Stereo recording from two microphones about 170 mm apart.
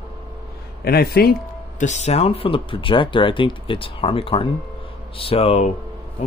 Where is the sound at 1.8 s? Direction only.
40° left (ahead or behind).